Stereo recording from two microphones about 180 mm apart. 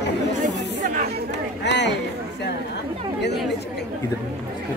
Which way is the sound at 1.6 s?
70° left (ahead or behind).